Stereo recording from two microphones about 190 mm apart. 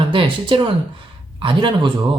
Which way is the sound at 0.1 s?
25° right (ahead or behind).